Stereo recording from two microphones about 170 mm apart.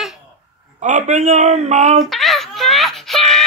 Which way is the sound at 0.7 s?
45° right (ahead or behind).